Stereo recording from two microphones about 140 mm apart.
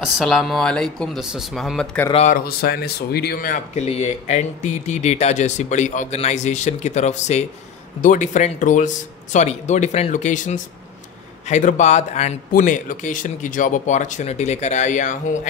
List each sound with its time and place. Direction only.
0.0 s speech: centre (ahead or behind)
2.3 s speech: 90° left
3.7 s speech: 50° left (ahead or behind)
8.0 s speech: 65° left (ahead or behind)
12.5 s speech: 70° left (ahead or behind)